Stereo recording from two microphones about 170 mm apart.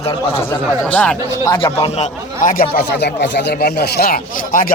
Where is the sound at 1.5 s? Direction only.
30° left (ahead or behind).